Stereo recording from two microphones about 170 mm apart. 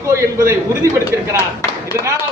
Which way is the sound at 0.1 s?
15° right (ahead or behind).